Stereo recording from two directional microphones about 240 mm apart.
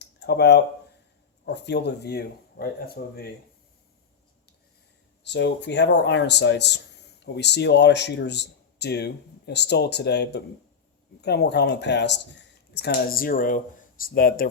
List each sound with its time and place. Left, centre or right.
0.0 s a sound: left
1.5 s speech: left
5.2 s speech: left